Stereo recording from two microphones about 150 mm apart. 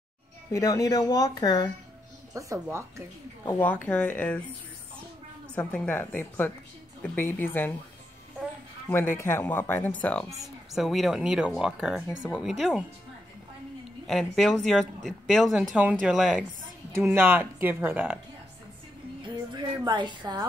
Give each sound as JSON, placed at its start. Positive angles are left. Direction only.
{"t": 0.5, "sound": "speech", "side_deg": 20}
{"t": 2.3, "sound": "speech", "side_deg": -20}
{"t": 3.4, "sound": "speech", "side_deg": 10}
{"t": 5.5, "sound": "speech", "side_deg": 5}
{"t": 8.8, "sound": "speech", "side_deg": 15}
{"t": 10.4, "sound": "speech", "side_deg": 0}
{"t": 14.0, "sound": "speech", "side_deg": 0}
{"t": 16.9, "sound": "speech", "side_deg": -15}
{"t": 19.2, "sound": "a woman's voice", "side_deg": -30}